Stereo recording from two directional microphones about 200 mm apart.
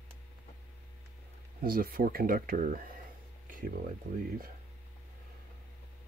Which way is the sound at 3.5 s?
45° right (ahead or behind).